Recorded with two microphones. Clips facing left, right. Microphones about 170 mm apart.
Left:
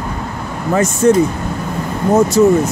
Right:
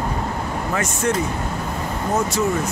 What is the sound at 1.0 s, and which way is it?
Speech, 35° left (ahead or behind).